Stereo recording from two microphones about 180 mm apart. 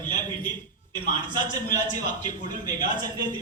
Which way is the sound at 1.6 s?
45° left (ahead or behind).